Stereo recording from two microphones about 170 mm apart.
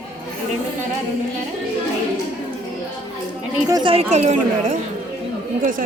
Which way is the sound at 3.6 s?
25° right (ahead or behind).